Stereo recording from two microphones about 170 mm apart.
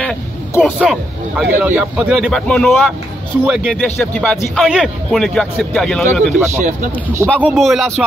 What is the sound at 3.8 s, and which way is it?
Speech, 5° left (ahead or behind).